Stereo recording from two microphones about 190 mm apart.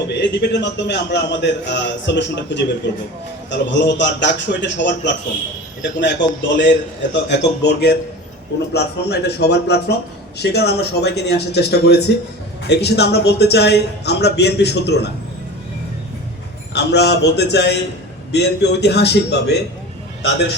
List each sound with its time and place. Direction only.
0.1 s a man's voice: 65° left (ahead or behind)
16.7 s a man's voice: 60° left (ahead or behind)